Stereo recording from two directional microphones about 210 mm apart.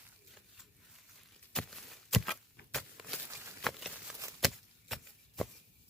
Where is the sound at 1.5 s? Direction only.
5° left (ahead or behind).